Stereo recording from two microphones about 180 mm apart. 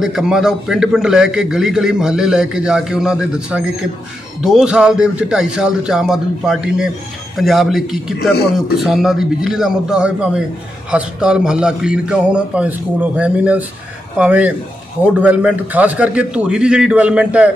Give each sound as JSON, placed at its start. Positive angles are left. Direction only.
{"t": 0.0, "sound": "a man's voice", "side_deg": 0}